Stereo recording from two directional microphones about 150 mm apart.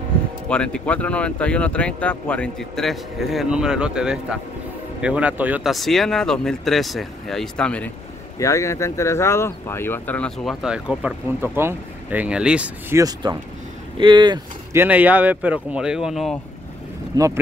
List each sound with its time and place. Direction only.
0.5 s speech: 5° left (ahead or behind)
8.4 s speech: 20° left (ahead or behind); by 12.7 s 5° right (ahead or behind)
12.9 s speech: 25° right (ahead or behind)
14.7 s speech: 15° right (ahead or behind)
17.1 s speech: 20° right (ahead or behind)